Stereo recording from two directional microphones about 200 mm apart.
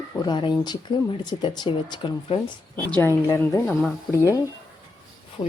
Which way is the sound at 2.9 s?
10° left (ahead or behind).